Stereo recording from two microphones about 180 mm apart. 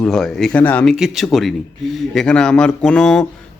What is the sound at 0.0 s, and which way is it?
A man's voice, 5° left (ahead or behind).